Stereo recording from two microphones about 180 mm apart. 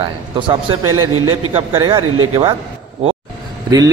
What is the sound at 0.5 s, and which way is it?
A man's voice, 25° right (ahead or behind).